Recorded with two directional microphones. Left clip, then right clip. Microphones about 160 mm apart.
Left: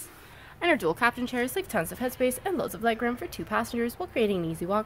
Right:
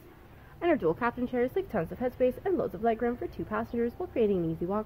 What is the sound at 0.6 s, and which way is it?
Speech, 5° left (ahead or behind).